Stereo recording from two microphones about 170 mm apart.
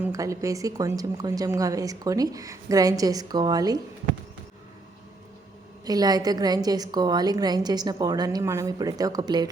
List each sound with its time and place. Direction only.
0.0 s speech: 20° right (ahead or behind)
5.8 s speech: 20° right (ahead or behind)